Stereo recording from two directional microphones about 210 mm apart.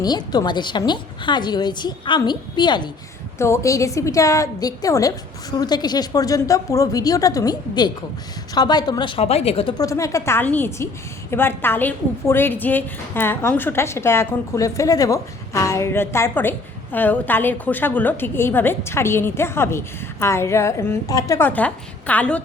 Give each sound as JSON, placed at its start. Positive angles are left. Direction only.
{"t": 0.0, "sound": "a woman's voice", "side_deg": 20}